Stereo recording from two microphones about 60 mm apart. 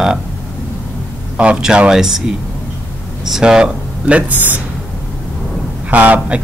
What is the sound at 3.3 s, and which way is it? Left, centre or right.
Speech, centre.